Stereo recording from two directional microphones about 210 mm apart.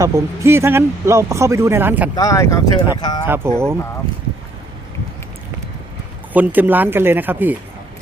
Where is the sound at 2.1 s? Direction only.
15° left (ahead or behind).